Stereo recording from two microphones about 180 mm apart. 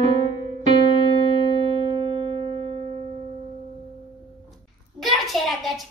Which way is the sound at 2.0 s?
30° right (ahead or behind).